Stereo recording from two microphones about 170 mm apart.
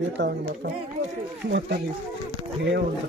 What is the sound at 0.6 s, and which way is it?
Speech, 65° right (ahead or behind).